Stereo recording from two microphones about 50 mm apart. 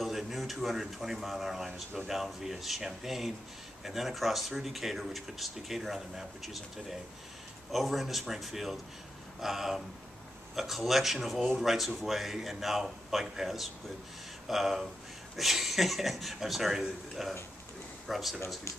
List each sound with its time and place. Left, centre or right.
0.0 s speech: centre